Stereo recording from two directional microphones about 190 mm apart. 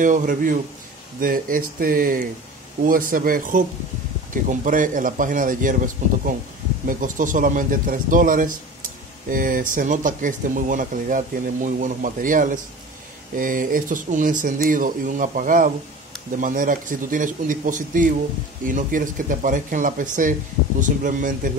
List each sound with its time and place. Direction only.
0.0 s speech: 45° right (ahead or behind)